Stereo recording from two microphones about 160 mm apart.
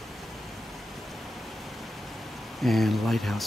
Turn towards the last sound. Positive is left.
turn(degrees=0)  # may be behind; listen again after turning